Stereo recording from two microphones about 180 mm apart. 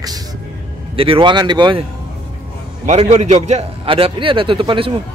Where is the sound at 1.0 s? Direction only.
30° right (ahead or behind).